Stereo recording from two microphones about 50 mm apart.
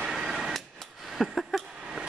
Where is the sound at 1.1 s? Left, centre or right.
Centre.